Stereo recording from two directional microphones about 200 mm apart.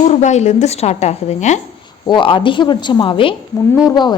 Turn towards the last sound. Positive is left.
turn(degrees=20)  # may be behind; listen again after turning